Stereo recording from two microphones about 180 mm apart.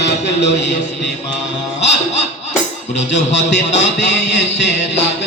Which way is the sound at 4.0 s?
70° left (ahead or behind).